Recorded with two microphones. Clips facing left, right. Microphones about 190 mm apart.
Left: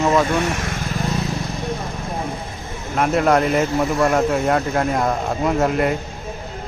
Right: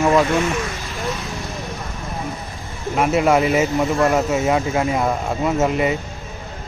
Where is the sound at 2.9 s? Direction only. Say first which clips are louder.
Even; 5° right (ahead or behind).